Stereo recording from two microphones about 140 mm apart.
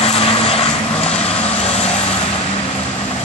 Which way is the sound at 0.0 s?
45° left (ahead or behind).